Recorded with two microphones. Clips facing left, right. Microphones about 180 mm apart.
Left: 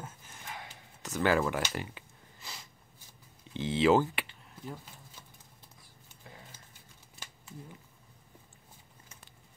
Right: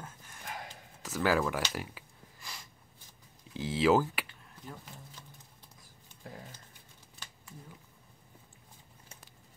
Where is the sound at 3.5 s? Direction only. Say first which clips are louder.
Left 1 dB; centre (ahead or behind).